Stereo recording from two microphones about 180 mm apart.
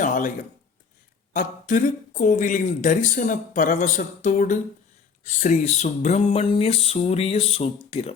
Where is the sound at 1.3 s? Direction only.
45° left (ahead or behind).